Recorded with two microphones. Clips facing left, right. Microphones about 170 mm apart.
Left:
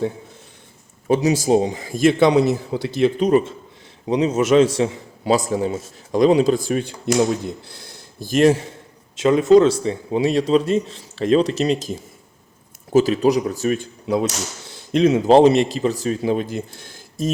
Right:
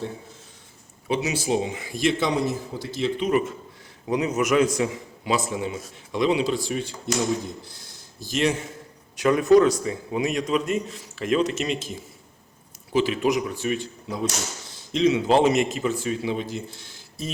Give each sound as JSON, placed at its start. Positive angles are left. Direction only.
{"t": 1.0, "sound": "a man's voice", "side_deg": 40}
{"t": 3.2, "sound": "speech", "side_deg": 35}
{"t": 4.0, "sound": "a man's voice", "side_deg": 25}
{"t": 7.6, "sound": "speech", "side_deg": 65}
{"t": 9.1, "sound": "speech", "side_deg": 25}
{"t": 14.9, "sound": "a man's voice", "side_deg": 50}
{"t": 15.3, "sound": "a man's voice", "side_deg": 35}